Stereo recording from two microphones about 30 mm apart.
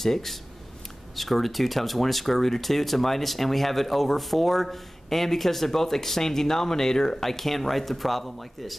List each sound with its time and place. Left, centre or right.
0.0 s speech: centre
7.2 s speech: centre